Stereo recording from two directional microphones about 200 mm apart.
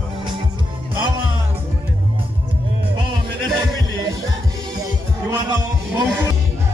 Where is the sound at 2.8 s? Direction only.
25° right (ahead or behind).